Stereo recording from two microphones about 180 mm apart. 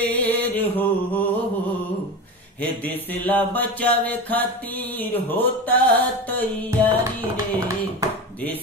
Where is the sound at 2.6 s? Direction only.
10° left (ahead or behind).